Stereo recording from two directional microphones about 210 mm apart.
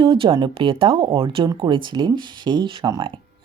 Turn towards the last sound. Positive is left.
turn(degrees=-20)  # may be behind; listen again after turning